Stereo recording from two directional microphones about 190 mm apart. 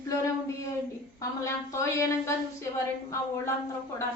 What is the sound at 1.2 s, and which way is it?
A woman's voice, 15° left (ahead or behind).